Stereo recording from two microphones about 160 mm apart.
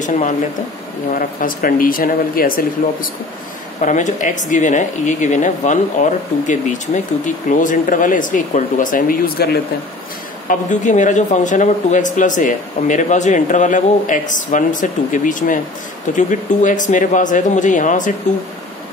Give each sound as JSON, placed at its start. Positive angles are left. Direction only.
{"t": 0.0, "sound": "speech", "side_deg": 50}
{"t": 3.8, "sound": "speech", "side_deg": 50}
{"t": 10.5, "sound": "speech", "side_deg": 50}